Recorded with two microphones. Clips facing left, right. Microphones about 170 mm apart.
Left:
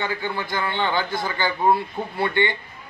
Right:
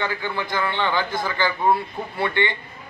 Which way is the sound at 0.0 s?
25° left (ahead or behind).